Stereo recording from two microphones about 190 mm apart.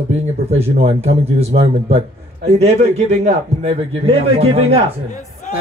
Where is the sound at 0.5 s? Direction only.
35° right (ahead or behind).